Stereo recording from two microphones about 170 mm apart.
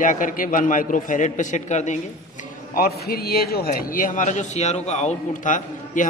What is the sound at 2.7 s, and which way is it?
A man's voice, 65° left (ahead or behind).